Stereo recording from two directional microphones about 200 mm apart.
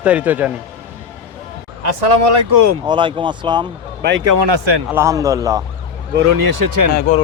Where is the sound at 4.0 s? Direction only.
60° right (ahead or behind).